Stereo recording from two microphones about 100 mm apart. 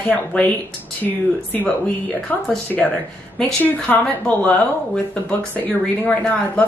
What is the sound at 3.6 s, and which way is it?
A woman's voice, 15° left (ahead or behind).